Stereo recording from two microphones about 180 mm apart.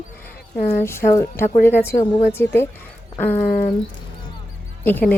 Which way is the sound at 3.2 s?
10° left (ahead or behind).